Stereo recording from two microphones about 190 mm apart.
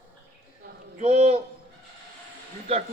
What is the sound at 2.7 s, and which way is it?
Speech, 30° right (ahead or behind).